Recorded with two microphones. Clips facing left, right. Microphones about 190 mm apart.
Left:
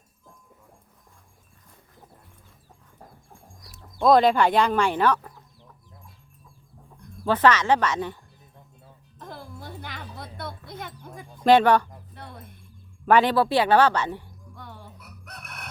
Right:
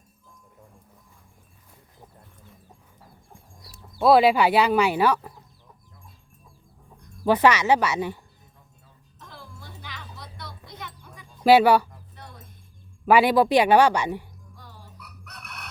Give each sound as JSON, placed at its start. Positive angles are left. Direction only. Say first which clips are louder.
{"t": 3.9, "sound": "speech", "louder": "right 1 dB", "side_deg": -5}
{"t": 7.3, "sound": "speech", "louder": "right 1 dB", "side_deg": -10}
{"t": 9.1, "sound": "music", "louder": "left 6 dB", "side_deg": 50}
{"t": 11.4, "sound": "speech", "louder": "right 1 dB", "side_deg": -10}
{"t": 12.1, "sound": "music", "louder": "left 4 dB", "side_deg": 55}
{"t": 13.1, "sound": "speech", "louder": "right 2 dB", "side_deg": -10}
{"t": 14.5, "sound": "crowing", "louder": "left 6 dB", "side_deg": 60}